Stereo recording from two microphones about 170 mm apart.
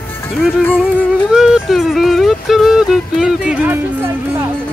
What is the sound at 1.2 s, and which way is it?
Speech, 5° right (ahead or behind).